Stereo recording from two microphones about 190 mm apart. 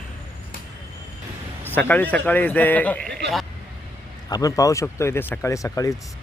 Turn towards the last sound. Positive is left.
turn(degrees=15)  # may be behind; listen again after turning